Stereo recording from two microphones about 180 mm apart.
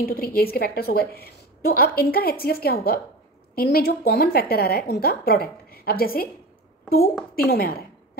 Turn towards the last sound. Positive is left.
turn(degrees=55)  # may be behind; listen again after turning